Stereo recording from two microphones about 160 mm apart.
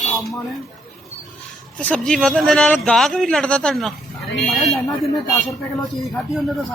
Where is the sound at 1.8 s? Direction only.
5° left (ahead or behind).